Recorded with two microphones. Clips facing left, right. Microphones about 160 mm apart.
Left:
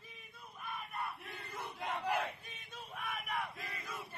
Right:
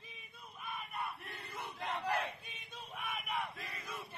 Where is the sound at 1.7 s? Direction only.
10° left (ahead or behind).